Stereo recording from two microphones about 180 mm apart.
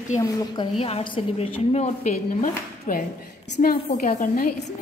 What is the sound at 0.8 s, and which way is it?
A woman's voice, 30° left (ahead or behind).